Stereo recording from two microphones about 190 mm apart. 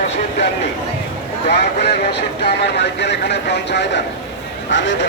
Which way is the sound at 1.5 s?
60° left (ahead or behind).